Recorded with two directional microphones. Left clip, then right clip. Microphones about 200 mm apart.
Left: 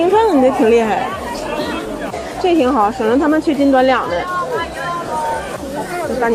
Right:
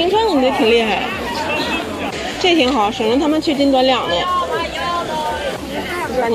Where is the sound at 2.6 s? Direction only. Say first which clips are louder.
Left 2 dB; 10° left (ahead or behind).